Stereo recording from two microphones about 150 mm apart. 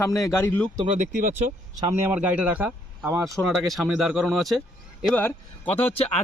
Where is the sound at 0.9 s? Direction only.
60° right (ahead or behind).